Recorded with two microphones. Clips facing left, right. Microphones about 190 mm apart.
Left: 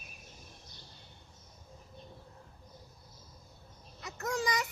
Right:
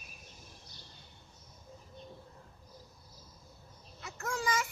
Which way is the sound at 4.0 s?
40° left (ahead or behind).